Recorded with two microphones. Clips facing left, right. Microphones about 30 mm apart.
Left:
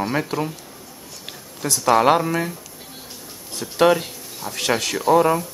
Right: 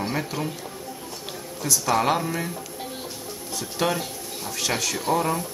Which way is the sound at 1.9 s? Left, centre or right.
Left.